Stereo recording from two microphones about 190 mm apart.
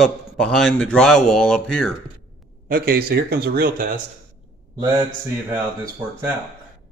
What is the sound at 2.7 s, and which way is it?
Speech, 50° right (ahead or behind).